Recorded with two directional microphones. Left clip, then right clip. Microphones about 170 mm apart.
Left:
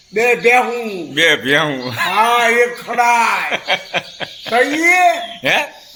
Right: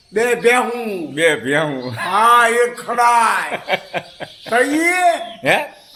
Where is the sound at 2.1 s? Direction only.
25° right (ahead or behind).